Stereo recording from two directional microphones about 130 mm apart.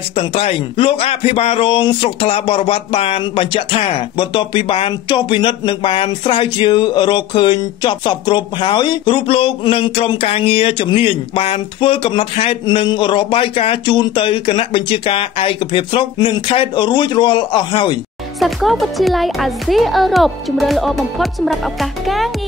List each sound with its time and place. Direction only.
0.1 s a man's voice: 45° left (ahead or behind)
18.4 s speech: centre (ahead or behind)